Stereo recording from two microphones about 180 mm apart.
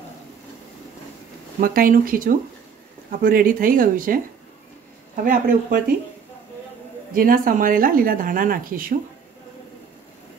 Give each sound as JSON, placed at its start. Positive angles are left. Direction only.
{"t": 1.6, "sound": "speech", "side_deg": -55}
{"t": 7.2, "sound": "speech", "side_deg": -50}